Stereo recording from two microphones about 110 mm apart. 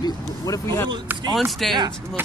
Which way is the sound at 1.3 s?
Centre (ahead or behind).